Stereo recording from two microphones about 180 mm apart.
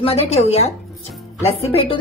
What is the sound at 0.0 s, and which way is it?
Speech, 35° left (ahead or behind).